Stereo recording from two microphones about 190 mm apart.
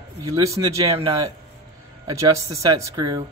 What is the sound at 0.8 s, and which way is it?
Speech, 30° right (ahead or behind).